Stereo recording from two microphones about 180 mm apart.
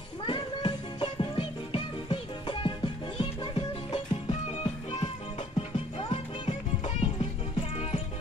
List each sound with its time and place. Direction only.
0.2 s music: 25° left (ahead or behind)